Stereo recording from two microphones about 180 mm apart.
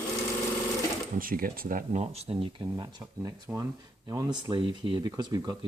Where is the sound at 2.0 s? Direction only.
35° right (ahead or behind).